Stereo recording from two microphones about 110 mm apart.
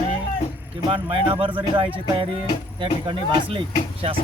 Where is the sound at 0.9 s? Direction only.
50° right (ahead or behind).